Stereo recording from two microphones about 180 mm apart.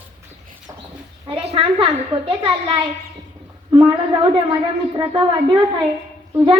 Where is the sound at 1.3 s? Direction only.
30° right (ahead or behind).